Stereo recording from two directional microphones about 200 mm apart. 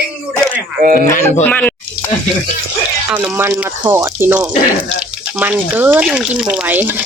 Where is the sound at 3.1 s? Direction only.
10° right (ahead or behind).